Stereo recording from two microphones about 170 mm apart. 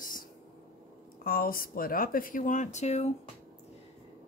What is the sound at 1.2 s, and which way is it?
Speech, 60° left (ahead or behind).